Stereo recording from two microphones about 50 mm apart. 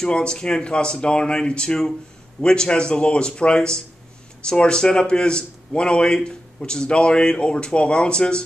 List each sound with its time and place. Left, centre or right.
0.0 s speech: centre